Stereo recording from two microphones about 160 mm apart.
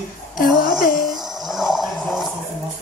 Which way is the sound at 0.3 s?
65° left (ahead or behind).